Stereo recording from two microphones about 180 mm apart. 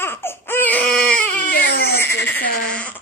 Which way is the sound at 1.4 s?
60° left (ahead or behind).